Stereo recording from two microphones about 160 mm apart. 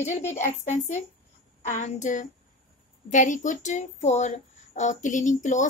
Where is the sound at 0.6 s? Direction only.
45° left (ahead or behind).